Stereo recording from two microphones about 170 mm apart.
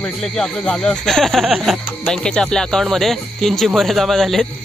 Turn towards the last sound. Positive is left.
turn(degrees=0)  # may be behind; listen again after turning